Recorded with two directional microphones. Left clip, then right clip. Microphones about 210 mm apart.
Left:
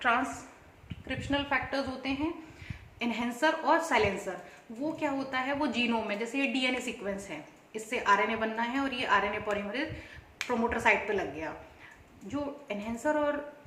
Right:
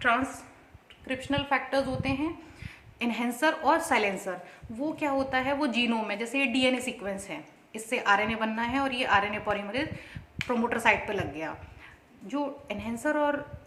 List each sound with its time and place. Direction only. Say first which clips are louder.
0.0 s a woman's voice: right 2 dB; 55° right (ahead or behind)